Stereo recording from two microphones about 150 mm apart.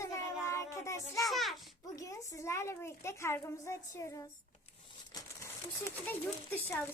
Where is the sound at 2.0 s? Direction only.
20° left (ahead or behind).